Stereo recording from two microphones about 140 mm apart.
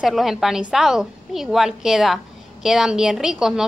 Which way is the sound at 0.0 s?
Centre (ahead or behind).